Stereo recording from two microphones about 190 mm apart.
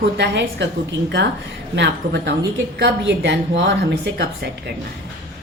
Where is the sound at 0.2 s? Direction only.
65° right (ahead or behind).